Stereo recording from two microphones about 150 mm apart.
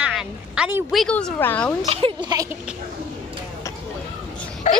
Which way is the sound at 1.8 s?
40° right (ahead or behind).